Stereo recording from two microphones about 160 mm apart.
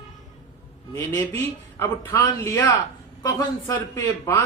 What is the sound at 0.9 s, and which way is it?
A man's voice, 15° left (ahead or behind).